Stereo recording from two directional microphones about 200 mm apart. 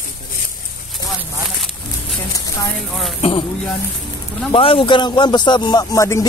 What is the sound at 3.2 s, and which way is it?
Speech, 25° left (ahead or behind).